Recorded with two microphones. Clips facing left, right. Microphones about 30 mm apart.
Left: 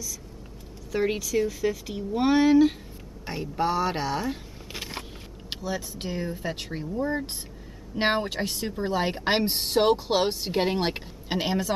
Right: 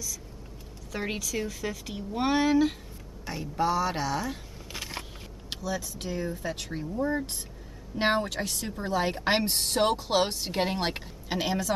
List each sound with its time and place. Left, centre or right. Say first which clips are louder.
0.9 s a woman's voice: left 7 dB; centre
3.3 s speech: left 1 dB; left
5.5 s speech: left 1 dB; left
7.9 s speech: left 1 dB; centre